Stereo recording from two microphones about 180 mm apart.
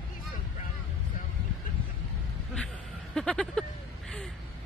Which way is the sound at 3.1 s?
5° left (ahead or behind).